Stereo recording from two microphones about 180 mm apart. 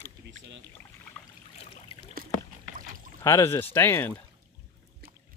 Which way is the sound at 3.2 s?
15° left (ahead or behind).